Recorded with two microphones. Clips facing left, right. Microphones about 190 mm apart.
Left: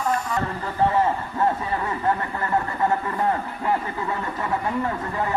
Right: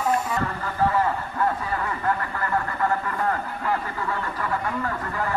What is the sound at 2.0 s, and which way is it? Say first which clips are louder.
Speech: left 2 dB; 25° left (ahead or behind).